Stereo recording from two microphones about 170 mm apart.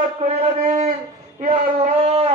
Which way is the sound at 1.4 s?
45° right (ahead or behind).